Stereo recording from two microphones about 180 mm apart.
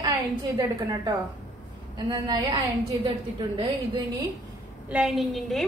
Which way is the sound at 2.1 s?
25° right (ahead or behind).